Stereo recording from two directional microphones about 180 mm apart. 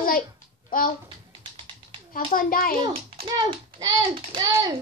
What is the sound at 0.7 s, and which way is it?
Speech, 50° left (ahead or behind).